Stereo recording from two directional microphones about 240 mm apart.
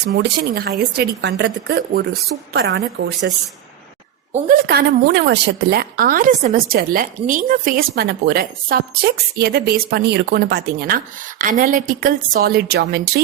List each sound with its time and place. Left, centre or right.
0.0 s speech: right
4.3 s a woman's voice: right